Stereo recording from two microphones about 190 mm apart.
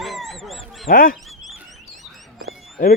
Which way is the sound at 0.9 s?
50° left (ahead or behind).